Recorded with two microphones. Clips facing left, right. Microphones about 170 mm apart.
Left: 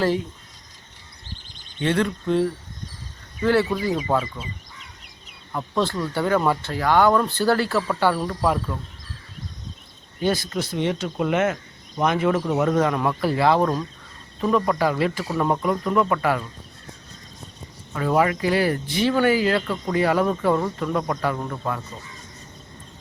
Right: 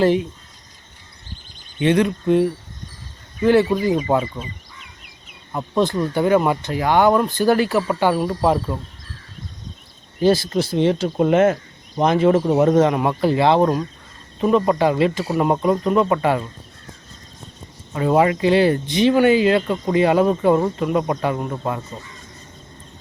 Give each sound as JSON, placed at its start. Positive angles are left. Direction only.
{"t": 0.0, "sound": "speech", "side_deg": -20}
{"t": 1.8, "sound": "speech", "side_deg": -15}
{"t": 5.5, "sound": "speech", "side_deg": -20}
{"t": 10.2, "sound": "speech", "side_deg": -30}
{"t": 17.9, "sound": "speech", "side_deg": -25}